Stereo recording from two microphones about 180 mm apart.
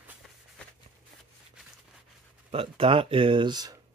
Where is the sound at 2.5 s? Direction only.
30° right (ahead or behind).